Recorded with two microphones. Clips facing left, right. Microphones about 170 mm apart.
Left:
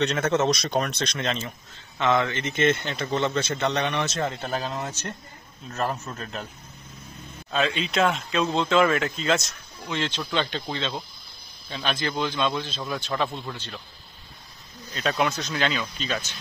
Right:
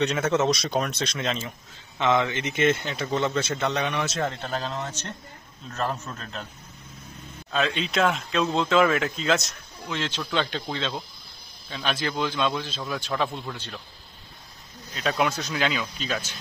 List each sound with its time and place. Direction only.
0.0 s speech: 5° right (ahead or behind)
2.0 s speech: 15° right (ahead or behind)
4.3 s speech: 10° left (ahead or behind)
7.5 s speech: centre (ahead or behind)
15.0 s speech: 5° right (ahead or behind)